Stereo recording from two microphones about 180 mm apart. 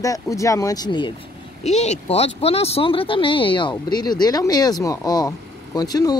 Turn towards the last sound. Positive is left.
turn(degrees=20)  # may be behind; listen again after turning